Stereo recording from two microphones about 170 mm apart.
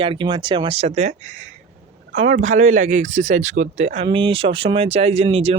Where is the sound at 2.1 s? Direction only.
50° right (ahead or behind).